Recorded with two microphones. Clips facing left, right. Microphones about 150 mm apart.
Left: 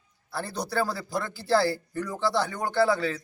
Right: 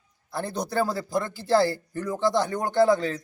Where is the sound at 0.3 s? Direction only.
15° right (ahead or behind).